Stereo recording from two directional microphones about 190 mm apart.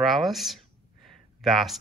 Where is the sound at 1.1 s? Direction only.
Centre (ahead or behind).